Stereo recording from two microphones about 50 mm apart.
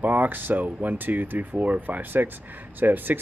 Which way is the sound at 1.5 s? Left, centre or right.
Right.